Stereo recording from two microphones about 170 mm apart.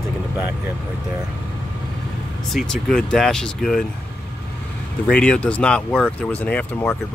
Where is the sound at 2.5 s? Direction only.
5° left (ahead or behind).